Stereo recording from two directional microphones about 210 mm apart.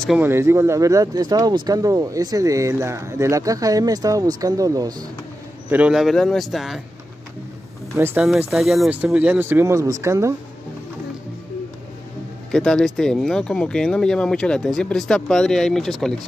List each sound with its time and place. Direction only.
0.0 s speech: 5° right (ahead or behind)
5.7 s speech: 5° right (ahead or behind)
7.9 s speech: 10° right (ahead or behind)
12.4 s speech: 5° left (ahead or behind)